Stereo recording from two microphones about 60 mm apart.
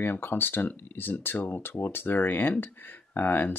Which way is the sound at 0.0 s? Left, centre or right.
Left.